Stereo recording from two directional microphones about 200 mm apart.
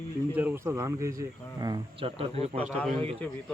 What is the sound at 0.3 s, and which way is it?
Speech, 10° right (ahead or behind).